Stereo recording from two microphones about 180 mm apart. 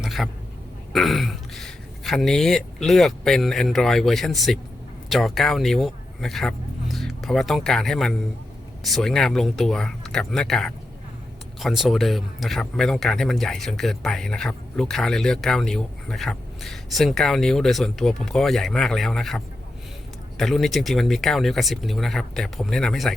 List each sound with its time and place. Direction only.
0.0 s a sound: centre (ahead or behind)
0.9 s speech: centre (ahead or behind)
20.4 s speech: centre (ahead or behind)